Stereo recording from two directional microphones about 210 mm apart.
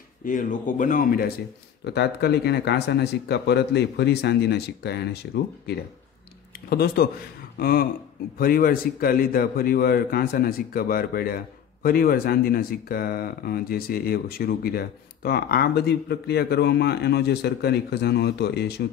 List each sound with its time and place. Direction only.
0.2 s a man's voice: 40° left (ahead or behind)